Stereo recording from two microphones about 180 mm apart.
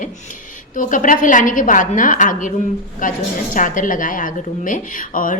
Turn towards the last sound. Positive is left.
turn(degrees=50)  # may be behind; listen again after turning